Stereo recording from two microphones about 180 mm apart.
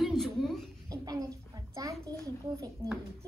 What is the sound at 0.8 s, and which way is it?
A child's voice, 20° right (ahead or behind).